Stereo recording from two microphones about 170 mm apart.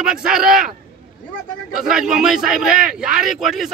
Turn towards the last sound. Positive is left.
turn(degrees=0)  # may be behind; listen again after turning